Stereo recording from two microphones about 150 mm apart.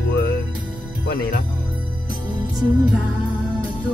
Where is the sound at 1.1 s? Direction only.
90° left.